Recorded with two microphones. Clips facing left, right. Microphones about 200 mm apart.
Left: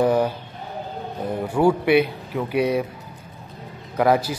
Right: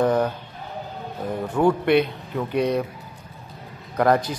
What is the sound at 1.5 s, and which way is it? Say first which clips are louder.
A man's voice: left 1 dB; 10° left (ahead or behind).